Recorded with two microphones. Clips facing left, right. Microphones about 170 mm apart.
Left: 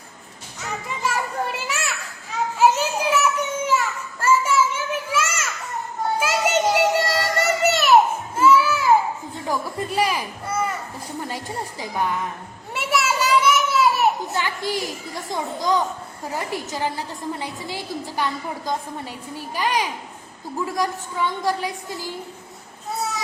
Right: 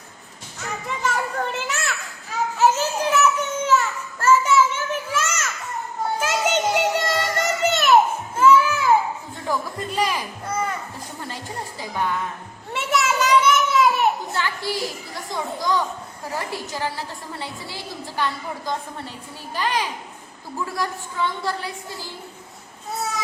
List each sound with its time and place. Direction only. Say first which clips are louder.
0.9 s children playing: right 1 dB; 10° left (ahead or behind)
6.1 s music: left 1 dB; 5° left (ahead or behind)
12.7 s children playing: right 1 dB; 10° left (ahead or behind)
15.3 s a child's voice: left 2 dB; 20° left (ahead or behind)